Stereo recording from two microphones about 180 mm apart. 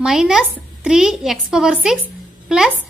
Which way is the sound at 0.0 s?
Centre (ahead or behind).